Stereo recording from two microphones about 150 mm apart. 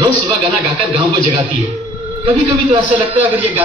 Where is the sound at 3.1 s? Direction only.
10° right (ahead or behind).